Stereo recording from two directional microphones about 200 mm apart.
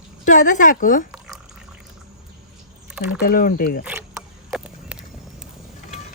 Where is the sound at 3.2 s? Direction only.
45° left (ahead or behind).